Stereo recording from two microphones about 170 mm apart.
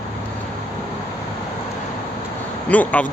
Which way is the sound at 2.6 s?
10° left (ahead or behind).